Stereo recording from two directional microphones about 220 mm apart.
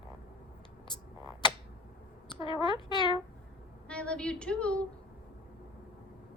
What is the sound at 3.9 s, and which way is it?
A woman's voice, 5° left (ahead or behind).